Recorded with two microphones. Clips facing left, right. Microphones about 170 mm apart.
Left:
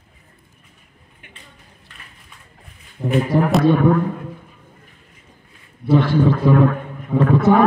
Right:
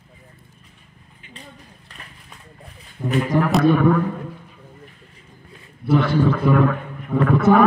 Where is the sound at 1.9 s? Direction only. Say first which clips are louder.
Right 4 dB; 35° right (ahead or behind).